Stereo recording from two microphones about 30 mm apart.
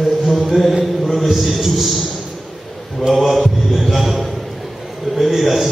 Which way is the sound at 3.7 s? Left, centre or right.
Centre.